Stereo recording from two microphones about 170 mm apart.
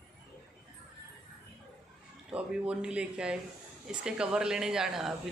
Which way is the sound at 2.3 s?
5° right (ahead or behind).